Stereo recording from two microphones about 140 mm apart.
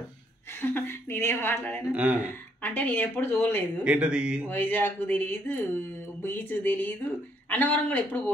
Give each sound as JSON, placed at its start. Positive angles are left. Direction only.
{"t": 0.6, "sound": "a woman's voice", "side_deg": 15}
{"t": 1.9, "sound": "speech", "side_deg": -10}
{"t": 2.6, "sound": "a woman's voice", "side_deg": 15}
{"t": 3.8, "sound": "speech", "side_deg": -5}
{"t": 4.5, "sound": "a woman's voice", "side_deg": 15}